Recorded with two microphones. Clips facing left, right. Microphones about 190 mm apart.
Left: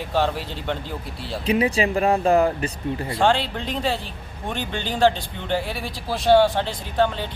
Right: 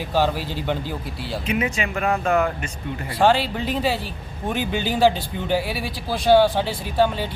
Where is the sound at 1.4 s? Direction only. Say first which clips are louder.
Left 5 dB; 35° left (ahead or behind).